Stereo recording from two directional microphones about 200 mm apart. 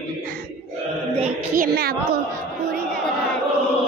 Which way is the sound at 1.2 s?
45° right (ahead or behind).